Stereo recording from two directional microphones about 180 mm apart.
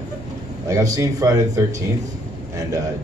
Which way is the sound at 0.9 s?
20° right (ahead or behind).